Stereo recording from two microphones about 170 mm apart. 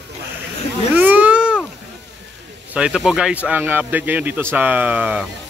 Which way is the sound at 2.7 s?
5° right (ahead or behind).